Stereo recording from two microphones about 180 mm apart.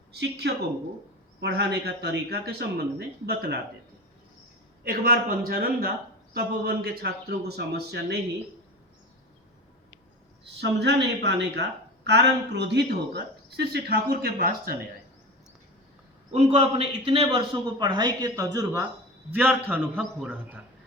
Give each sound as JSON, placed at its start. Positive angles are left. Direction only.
{"t": 0.2, "sound": "speech", "side_deg": -65}
{"t": 4.8, "sound": "speech", "side_deg": -55}
{"t": 10.6, "sound": "speech", "side_deg": -75}
{"t": 16.3, "sound": "a man's voice", "side_deg": -35}